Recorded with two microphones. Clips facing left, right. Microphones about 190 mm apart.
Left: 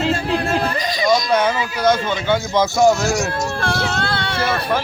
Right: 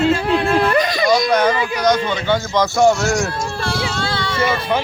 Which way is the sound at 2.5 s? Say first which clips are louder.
Even; 5° left (ahead or behind).